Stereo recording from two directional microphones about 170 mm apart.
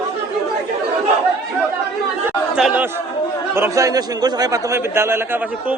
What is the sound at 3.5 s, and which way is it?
A man's voice, 15° right (ahead or behind).